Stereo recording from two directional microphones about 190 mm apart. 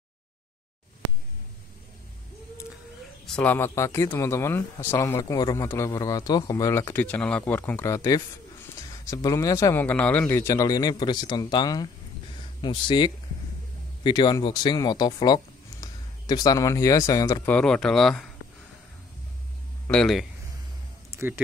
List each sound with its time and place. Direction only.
3.3 s a man's voice: 5° left (ahead or behind)
17.5 s speech: 5° left (ahead or behind)
19.9 s speech: centre (ahead or behind)
21.1 s music: 15° right (ahead or behind)